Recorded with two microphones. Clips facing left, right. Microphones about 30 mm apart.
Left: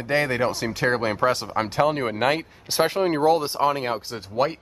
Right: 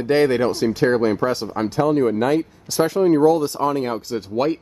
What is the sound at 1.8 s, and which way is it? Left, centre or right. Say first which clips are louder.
Speech: right 4 dB; left.